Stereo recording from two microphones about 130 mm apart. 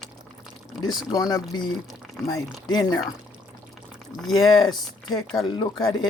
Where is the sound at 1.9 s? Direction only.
Centre (ahead or behind).